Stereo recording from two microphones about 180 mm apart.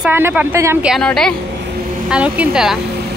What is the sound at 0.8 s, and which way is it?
A woman's voice, centre (ahead or behind).